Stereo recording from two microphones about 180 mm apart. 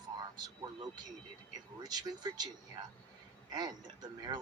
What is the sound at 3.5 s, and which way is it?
Speech, 25° right (ahead or behind).